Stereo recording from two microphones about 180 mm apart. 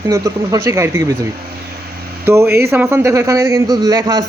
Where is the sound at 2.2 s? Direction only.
15° right (ahead or behind).